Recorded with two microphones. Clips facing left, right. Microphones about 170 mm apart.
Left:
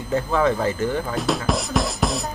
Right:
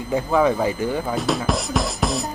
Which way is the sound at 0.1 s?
10° right (ahead or behind).